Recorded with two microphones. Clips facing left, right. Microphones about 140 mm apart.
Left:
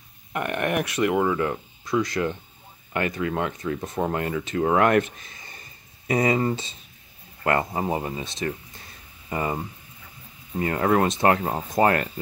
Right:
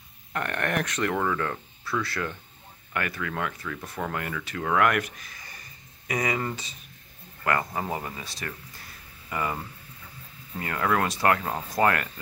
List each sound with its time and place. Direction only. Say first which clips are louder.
0.3 s speech: left 3 dB; 15° left (ahead or behind)